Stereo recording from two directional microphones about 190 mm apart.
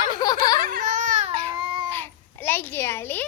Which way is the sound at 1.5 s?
25° right (ahead or behind).